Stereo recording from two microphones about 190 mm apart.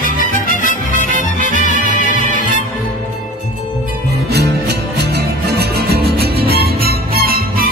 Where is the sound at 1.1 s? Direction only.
45° right (ahead or behind).